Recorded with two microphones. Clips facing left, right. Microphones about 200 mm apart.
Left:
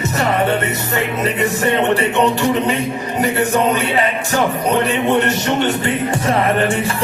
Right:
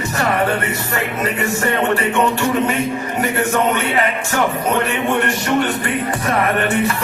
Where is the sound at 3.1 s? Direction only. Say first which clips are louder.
Left 2 dB; 15° left (ahead or behind).